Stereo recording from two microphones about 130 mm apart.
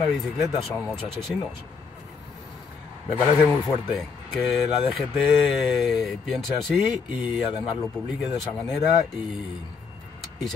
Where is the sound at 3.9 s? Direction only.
Centre (ahead or behind).